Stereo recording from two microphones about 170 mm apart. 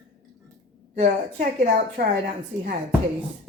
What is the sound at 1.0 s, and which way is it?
A woman's voice, 50° right (ahead or behind).